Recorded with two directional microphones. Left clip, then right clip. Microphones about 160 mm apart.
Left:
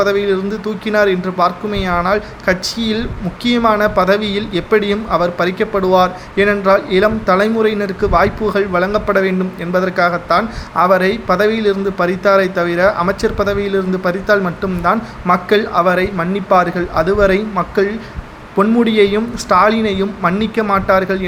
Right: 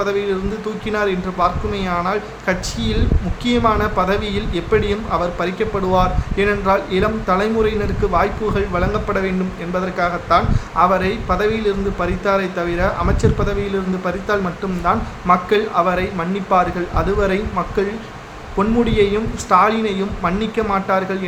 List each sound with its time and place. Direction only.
0.0 s speech: 30° left (ahead or behind)